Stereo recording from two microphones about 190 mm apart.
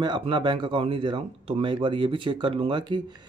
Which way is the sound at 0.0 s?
25° right (ahead or behind).